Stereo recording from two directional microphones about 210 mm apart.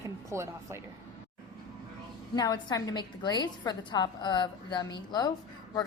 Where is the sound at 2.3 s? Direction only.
20° left (ahead or behind).